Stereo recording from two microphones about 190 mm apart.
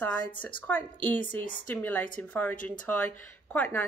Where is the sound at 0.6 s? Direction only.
10° left (ahead or behind).